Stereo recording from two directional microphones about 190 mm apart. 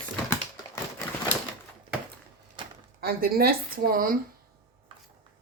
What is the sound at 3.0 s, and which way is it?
Speech, 55° right (ahead or behind).